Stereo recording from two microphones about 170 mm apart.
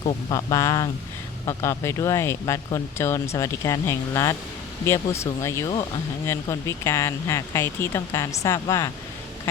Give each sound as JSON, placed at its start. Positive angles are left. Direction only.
{"t": 0.1, "sound": "speech", "side_deg": 20}